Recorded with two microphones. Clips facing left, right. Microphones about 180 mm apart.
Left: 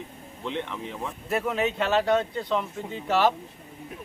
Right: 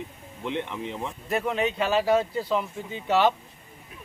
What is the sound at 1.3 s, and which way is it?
A man's voice, centre (ahead or behind).